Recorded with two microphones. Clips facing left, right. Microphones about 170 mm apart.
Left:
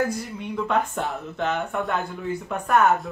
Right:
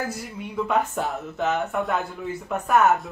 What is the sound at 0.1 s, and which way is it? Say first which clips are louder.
Speech: left 3 dB; 5° right (ahead or behind).